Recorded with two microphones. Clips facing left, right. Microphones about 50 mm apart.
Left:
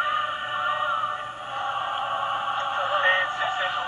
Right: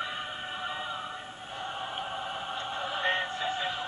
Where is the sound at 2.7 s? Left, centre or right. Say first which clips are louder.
Left 8 dB; left.